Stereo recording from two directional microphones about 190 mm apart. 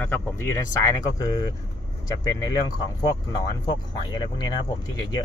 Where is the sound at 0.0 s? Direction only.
15° left (ahead or behind).